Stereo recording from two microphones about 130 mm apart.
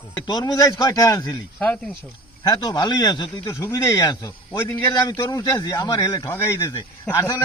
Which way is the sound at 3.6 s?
20° left (ahead or behind).